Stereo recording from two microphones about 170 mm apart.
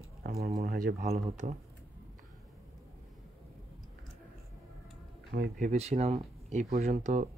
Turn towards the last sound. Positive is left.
turn(degrees=-45)  # may be behind; listen again after turning